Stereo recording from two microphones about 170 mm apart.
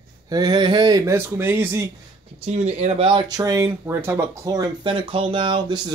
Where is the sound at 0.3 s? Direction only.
25° right (ahead or behind).